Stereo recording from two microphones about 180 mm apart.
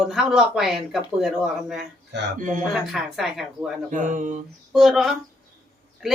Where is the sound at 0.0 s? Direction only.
5° right (ahead or behind).